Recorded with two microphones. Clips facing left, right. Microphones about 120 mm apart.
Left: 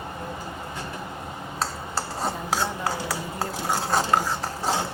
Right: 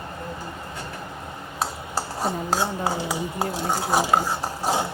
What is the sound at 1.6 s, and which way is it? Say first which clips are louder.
Speech: right 2 dB; 15° right (ahead or behind).